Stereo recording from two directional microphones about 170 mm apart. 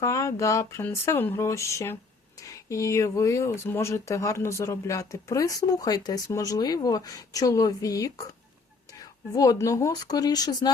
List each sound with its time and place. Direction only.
0.0 s speech: 20° left (ahead or behind)